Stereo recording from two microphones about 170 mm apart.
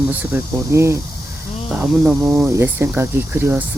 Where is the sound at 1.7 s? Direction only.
Centre (ahead or behind).